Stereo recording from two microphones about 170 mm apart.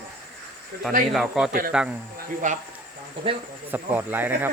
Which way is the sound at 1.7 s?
5° right (ahead or behind).